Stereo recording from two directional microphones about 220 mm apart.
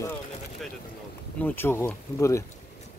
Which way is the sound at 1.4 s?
10° left (ahead or behind).